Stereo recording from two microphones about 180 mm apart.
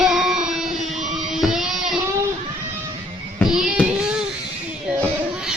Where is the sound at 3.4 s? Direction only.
5° right (ahead or behind).